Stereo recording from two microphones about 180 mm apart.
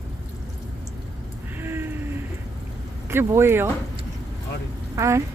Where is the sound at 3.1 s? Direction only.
15° right (ahead or behind).